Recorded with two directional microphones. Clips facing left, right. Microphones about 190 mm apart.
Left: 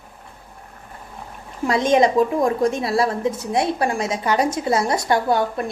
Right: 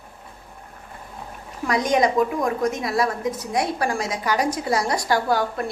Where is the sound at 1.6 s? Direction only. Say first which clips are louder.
Left 3 dB; 25° left (ahead or behind).